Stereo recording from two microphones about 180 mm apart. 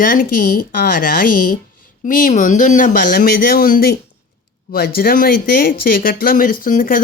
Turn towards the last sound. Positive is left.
turn(degrees=50)  # may be behind; listen again after turning